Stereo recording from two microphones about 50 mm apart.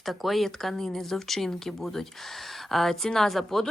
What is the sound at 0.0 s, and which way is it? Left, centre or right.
Speech, centre.